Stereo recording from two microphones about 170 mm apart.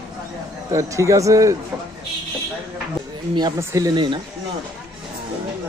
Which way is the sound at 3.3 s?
20° right (ahead or behind).